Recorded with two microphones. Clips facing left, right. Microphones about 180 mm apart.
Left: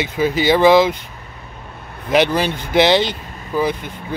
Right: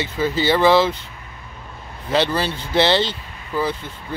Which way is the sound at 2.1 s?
15° left (ahead or behind).